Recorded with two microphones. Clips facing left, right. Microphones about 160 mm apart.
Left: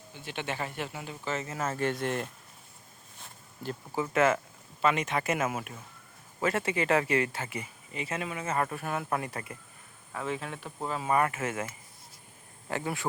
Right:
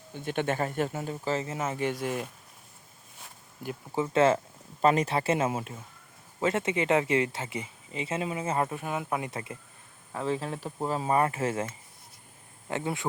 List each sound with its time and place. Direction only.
0.1 s speech: 50° right (ahead or behind); by 1.5 s 30° right (ahead or behind)
1.5 s speech: 15° right (ahead or behind)
3.9 s speech: 25° right (ahead or behind)